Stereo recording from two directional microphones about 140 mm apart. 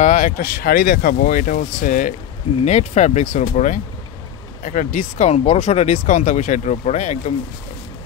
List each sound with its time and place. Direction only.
0.0 s speech: 65° left (ahead or behind)
2.6 s speech: 50° left (ahead or behind)
4.6 s speech: 75° left (ahead or behind)
5.3 s speech: 50° left (ahead or behind)